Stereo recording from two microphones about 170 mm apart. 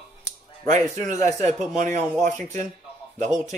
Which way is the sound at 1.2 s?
40° right (ahead or behind).